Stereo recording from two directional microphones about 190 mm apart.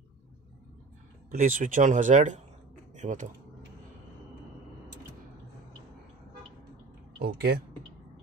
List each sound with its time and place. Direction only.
1.3 s speech: 45° right (ahead or behind)
7.2 s speech: 60° right (ahead or behind)